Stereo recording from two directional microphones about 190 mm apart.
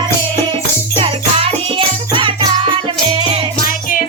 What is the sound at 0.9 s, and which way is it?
Music, 30° right (ahead or behind).